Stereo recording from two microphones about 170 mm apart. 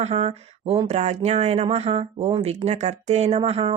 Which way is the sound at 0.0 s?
40° right (ahead or behind).